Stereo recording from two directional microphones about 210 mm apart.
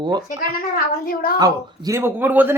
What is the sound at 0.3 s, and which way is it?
A woman's voice, 45° left (ahead or behind).